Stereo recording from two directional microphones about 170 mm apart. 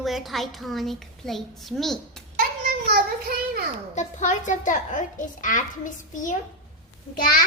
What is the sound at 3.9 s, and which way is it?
A woman's voice, 45° left (ahead or behind).